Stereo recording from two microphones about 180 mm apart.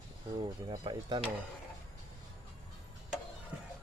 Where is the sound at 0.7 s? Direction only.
25° right (ahead or behind).